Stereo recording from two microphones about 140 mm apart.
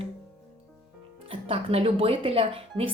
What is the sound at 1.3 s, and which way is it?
A woman's voice, 45° right (ahead or behind).